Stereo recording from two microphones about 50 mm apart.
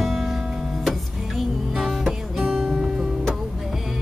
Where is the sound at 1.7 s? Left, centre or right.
Centre.